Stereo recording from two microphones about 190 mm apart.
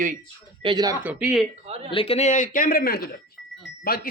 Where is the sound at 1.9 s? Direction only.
30° left (ahead or behind).